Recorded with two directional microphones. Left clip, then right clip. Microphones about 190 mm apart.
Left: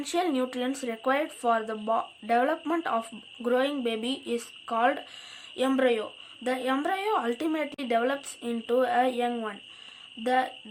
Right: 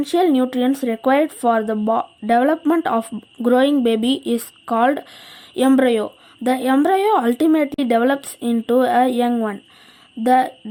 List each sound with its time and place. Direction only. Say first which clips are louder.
0.0 s a woman's voice: right 11 dB; 30° right (ahead or behind)